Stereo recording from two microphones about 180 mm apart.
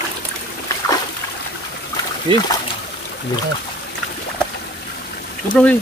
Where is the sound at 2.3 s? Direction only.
25° right (ahead or behind).